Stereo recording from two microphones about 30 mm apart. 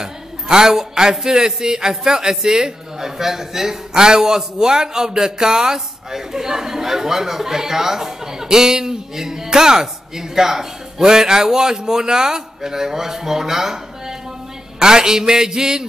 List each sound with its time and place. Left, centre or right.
0.0 s a woman's voice: centre
3.9 s a man's voice: right
14.8 s a man's voice: right